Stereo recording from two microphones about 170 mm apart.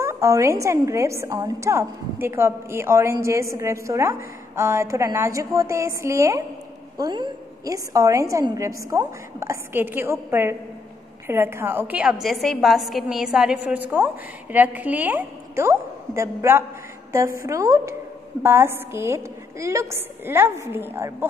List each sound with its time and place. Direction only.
0.0 s a woman's voice: 15° right (ahead or behind)
11.2 s a woman's voice: 15° right (ahead or behind)